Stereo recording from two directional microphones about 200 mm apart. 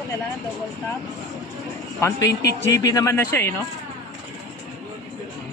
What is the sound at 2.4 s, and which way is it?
Speech, 15° left (ahead or behind).